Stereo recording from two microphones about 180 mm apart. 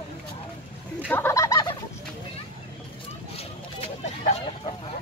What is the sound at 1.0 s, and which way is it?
Fowl, 10° left (ahead or behind).